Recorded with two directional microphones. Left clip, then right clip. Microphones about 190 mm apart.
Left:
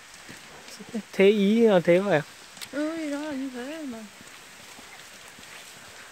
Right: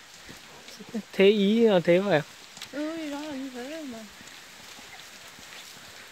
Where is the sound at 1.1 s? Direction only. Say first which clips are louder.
Left 1 dB; 5° left (ahead or behind).